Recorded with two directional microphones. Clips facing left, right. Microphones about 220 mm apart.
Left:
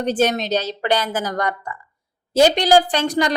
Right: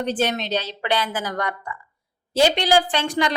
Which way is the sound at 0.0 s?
40° left (ahead or behind).